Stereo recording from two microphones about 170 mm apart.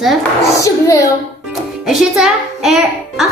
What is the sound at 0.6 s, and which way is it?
Speech, 20° left (ahead or behind).